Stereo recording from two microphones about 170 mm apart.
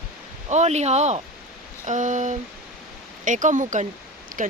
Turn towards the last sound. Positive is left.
turn(degrees=-50)  # may be behind; listen again after turning